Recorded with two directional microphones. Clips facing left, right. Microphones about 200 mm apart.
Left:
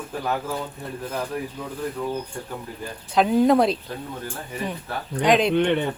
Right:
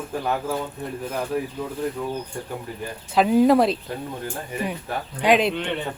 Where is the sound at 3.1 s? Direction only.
5° right (ahead or behind).